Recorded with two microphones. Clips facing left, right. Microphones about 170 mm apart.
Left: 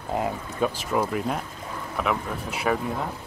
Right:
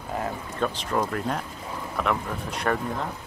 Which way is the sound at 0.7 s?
5° left (ahead or behind).